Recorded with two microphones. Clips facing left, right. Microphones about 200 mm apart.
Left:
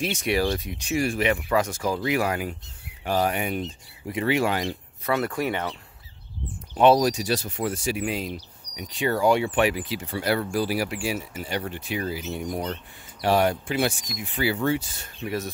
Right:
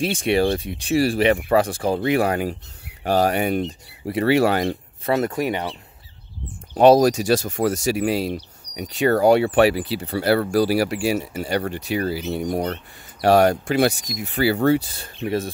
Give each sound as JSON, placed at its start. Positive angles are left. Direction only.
{"t": 0.0, "sound": "speech", "side_deg": -30}
{"t": 5.0, "sound": "speech", "side_deg": -25}
{"t": 6.7, "sound": "speech", "side_deg": -40}
{"t": 8.9, "sound": "cricket", "side_deg": -60}
{"t": 9.5, "sound": "speech", "side_deg": -35}